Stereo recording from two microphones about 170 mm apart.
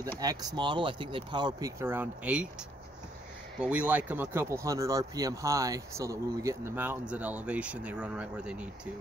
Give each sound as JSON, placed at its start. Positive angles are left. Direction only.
{"t": 0.2, "sound": "speech", "side_deg": -20}
{"t": 1.8, "sound": "speech", "side_deg": -10}
{"t": 3.5, "sound": "speech", "side_deg": -5}